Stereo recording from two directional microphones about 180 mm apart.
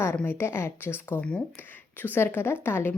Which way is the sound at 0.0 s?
10° left (ahead or behind).